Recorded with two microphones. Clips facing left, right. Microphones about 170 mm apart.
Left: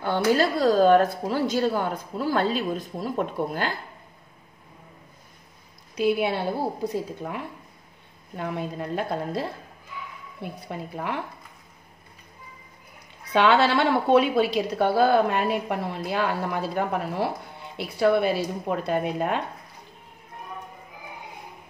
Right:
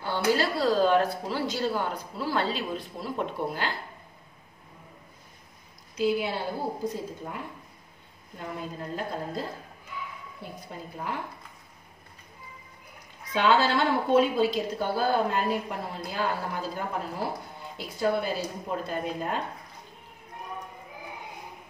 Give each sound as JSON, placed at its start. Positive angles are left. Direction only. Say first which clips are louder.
{"t": 0.0, "sound": "speech", "louder": "left 4 dB", "side_deg": 50}
{"t": 5.9, "sound": "a woman's voice", "louder": "left 4 dB", "side_deg": 60}
{"t": 8.4, "sound": "a woman's voice", "louder": "left 6 dB", "side_deg": 70}
{"t": 13.3, "sound": "a woman's voice", "louder": "left 4 dB", "side_deg": 70}